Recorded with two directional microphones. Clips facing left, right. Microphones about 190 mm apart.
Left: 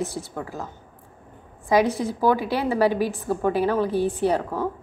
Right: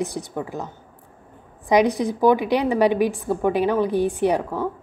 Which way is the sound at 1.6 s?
15° right (ahead or behind).